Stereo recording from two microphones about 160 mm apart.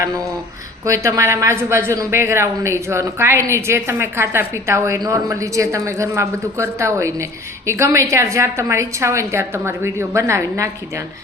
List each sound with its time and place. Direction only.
0.9 s speech: 20° right (ahead or behind)